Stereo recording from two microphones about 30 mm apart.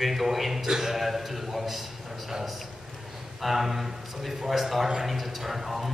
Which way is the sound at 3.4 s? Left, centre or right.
Centre.